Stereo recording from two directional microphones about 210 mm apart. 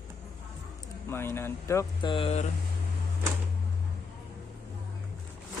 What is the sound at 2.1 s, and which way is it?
Speech, 30° left (ahead or behind).